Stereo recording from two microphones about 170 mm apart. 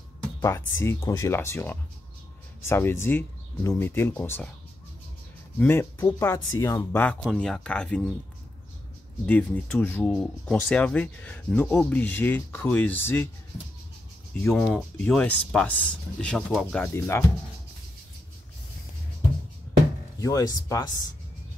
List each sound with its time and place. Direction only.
0.4 s speech: 15° left (ahead or behind)
5.6 s speech: 15° left (ahead or behind)
9.2 s speech: 10° left (ahead or behind)
14.5 s speech: centre (ahead or behind)
20.2 s speech: 20° left (ahead or behind)